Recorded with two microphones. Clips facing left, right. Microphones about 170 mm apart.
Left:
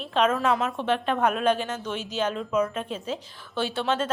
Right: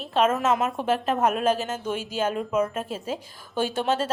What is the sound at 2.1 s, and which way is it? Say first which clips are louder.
Speech: even; 10° right (ahead or behind).